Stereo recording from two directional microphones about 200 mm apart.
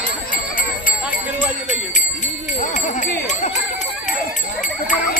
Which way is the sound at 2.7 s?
40° left (ahead or behind).